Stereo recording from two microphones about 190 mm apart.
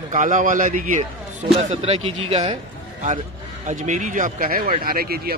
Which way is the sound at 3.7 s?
40° right (ahead or behind).